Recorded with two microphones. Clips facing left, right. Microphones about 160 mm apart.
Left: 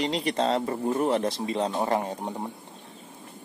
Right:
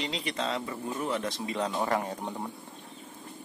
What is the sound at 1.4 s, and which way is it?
Speech, 30° left (ahead or behind).